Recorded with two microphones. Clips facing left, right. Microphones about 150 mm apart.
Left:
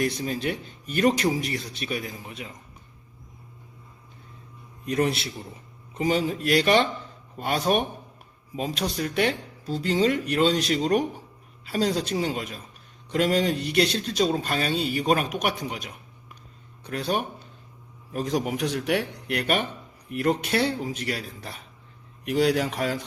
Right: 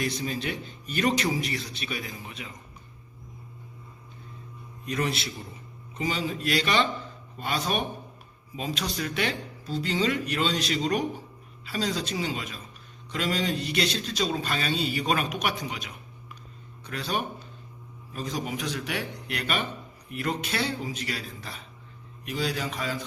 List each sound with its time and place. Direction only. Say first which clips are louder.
0.0 s a man's voice: left 4 dB; 50° left (ahead or behind)
4.9 s a man's voice: left 5 dB; 50° left (ahead or behind)
18.1 s speech: left 6 dB; 65° left (ahead or behind)
22.3 s speech: left 8 dB; 65° left (ahead or behind)